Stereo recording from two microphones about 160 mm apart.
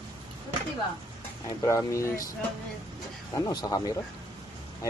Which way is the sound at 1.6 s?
20° left (ahead or behind).